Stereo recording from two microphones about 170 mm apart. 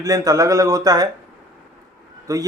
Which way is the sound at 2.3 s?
20° right (ahead or behind).